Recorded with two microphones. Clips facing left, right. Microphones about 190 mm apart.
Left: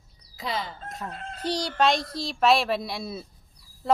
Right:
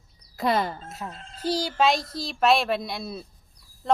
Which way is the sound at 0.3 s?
55° right (ahead or behind).